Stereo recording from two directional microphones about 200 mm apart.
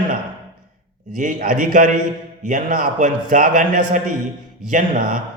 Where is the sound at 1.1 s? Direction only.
40° right (ahead or behind).